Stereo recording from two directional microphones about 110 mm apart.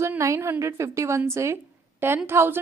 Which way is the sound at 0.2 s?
25° right (ahead or behind).